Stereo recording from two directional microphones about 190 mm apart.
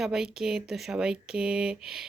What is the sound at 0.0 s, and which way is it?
Speech, centre (ahead or behind).